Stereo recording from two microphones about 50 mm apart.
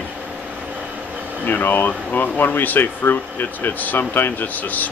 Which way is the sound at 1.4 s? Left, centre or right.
Left.